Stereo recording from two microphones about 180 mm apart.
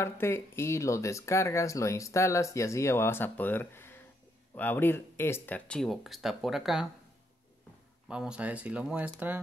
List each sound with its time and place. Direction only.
0.0 s speech: 15° left (ahead or behind); by 6.9 s centre (ahead or behind)
8.1 s speech: 5° right (ahead or behind)